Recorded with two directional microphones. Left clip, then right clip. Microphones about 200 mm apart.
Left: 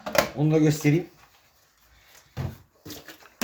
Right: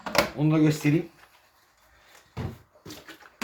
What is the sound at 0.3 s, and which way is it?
Speech, 35° left (ahead or behind).